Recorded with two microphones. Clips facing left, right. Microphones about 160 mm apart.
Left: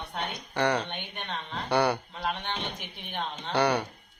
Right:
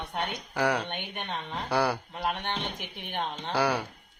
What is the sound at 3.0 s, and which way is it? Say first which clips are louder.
Speech: right 2 dB; 50° right (ahead or behind).